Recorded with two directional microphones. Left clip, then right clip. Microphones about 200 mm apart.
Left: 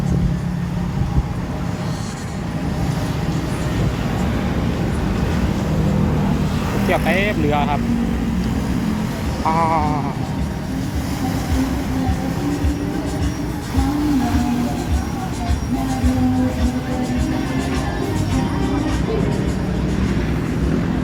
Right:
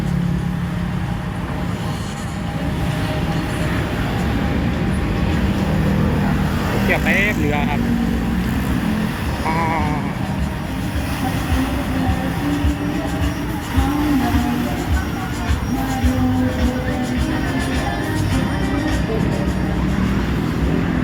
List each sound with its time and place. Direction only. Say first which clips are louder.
6.9 s speech: even; 25° left (ahead or behind)